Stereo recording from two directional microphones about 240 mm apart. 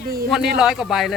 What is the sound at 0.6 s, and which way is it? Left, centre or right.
Speech, centre.